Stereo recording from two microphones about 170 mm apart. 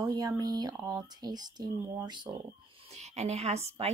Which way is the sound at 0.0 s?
20° right (ahead or behind).